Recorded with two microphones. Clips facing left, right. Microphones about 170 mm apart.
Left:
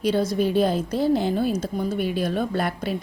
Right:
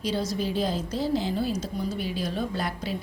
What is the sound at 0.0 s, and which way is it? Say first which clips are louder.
A woman's voice: left 7 dB; 55° left (ahead or behind).